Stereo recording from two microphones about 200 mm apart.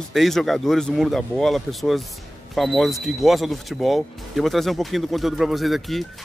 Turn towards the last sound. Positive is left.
turn(degrees=0)  # may be behind; listen again after turning